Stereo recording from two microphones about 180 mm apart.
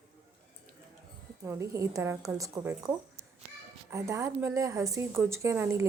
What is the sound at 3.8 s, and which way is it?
A woman's voice, 15° right (ahead or behind).